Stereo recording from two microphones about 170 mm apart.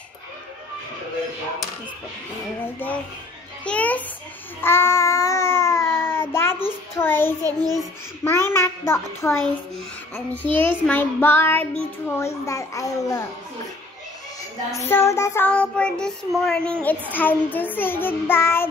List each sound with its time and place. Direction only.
3.6 s child singing: 10° left (ahead or behind)
4.6 s babbling: 15° left (ahead or behind)
7.4 s a child's voice: 20° right (ahead or behind)
8.2 s child singing: 15° left (ahead or behind)
10.3 s child singing: 10° left (ahead or behind)
14.9 s child singing: 15° left (ahead or behind)